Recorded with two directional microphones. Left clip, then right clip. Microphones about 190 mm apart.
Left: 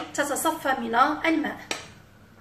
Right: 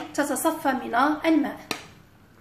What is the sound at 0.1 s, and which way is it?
A woman's voice, 20° right (ahead or behind).